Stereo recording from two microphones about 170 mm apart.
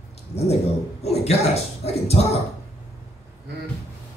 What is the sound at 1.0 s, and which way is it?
Speech, 40° left (ahead or behind).